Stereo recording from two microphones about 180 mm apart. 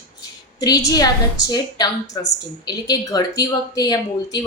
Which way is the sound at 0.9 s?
20° left (ahead or behind).